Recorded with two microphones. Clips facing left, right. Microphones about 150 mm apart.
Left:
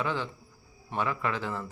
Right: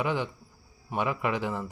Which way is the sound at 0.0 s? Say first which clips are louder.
Right 3 dB; 15° right (ahead or behind).